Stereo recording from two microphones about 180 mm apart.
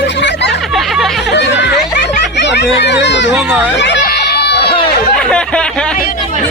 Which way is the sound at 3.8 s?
65° left (ahead or behind).